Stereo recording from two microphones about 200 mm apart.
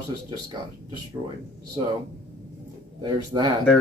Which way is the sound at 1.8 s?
25° right (ahead or behind).